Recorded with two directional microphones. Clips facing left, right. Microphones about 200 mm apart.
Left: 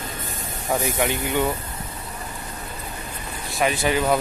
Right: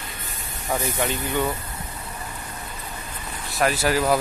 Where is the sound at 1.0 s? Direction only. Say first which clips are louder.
Left 2 dB; 15° left (ahead or behind).